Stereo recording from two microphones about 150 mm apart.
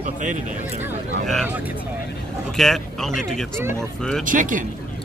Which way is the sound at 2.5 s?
Centre (ahead or behind).